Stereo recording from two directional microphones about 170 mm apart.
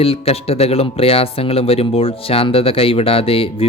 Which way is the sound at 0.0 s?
35° left (ahead or behind).